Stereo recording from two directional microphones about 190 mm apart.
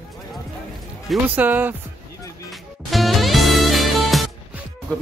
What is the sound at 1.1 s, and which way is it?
Speech, 10° right (ahead or behind).